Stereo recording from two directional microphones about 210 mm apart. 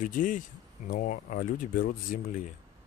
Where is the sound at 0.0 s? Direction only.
40° left (ahead or behind).